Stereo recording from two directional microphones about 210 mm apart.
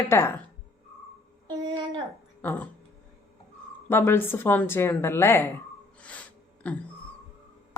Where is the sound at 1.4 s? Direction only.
20° right (ahead or behind).